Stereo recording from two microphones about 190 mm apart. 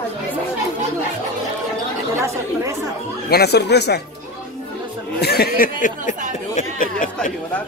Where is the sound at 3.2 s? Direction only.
55° left (ahead or behind).